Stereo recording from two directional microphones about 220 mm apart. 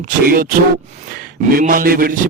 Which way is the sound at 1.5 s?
40° right (ahead or behind).